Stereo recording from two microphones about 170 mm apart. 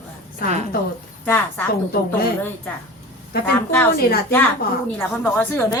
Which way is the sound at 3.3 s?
65° left (ahead or behind).